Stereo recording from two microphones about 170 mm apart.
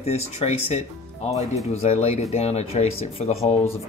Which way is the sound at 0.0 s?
40° left (ahead or behind).